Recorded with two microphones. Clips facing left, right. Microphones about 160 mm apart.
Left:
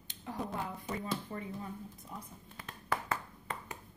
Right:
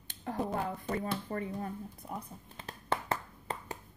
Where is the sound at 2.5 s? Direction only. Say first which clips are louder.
Right 2 dB; 30° right (ahead or behind).